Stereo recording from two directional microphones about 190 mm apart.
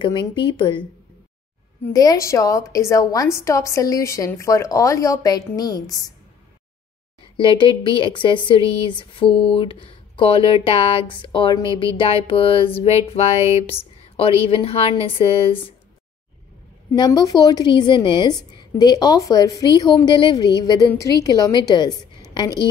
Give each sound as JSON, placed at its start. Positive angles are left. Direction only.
{"t": 0.0, "sound": "speech", "side_deg": 25}
{"t": 1.9, "sound": "a woman's voice", "side_deg": 20}
{"t": 7.3, "sound": "speech", "side_deg": 30}
{"t": 12.0, "sound": "music", "side_deg": 30}
{"t": 14.1, "sound": "speech", "side_deg": 30}
{"t": 16.9, "sound": "speech", "side_deg": 20}